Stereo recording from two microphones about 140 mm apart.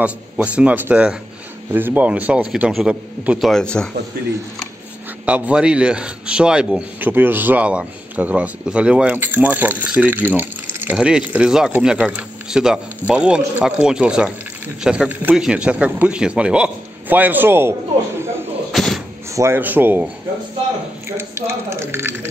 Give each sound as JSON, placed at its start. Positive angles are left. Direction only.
{"t": 0.0, "sound": "a man's voice", "side_deg": -10}
{"t": 5.2, "sound": "a man's voice", "side_deg": -10}
{"t": 18.7, "sound": "door", "side_deg": 0}
{"t": 19.3, "sound": "a man's voice", "side_deg": -20}
{"t": 21.2, "sound": "speech", "side_deg": -20}